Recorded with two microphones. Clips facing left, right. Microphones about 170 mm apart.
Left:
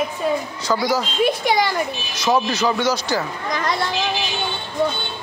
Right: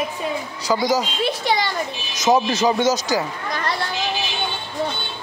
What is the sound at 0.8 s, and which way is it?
Speech, 15° right (ahead or behind).